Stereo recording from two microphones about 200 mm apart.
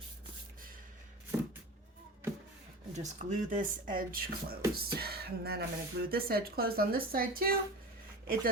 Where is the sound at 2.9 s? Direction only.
35° right (ahead or behind).